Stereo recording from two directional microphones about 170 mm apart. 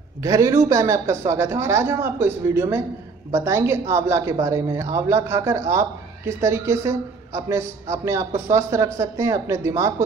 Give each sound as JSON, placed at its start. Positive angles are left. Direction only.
{"t": 0.2, "sound": "a woman's voice", "side_deg": -20}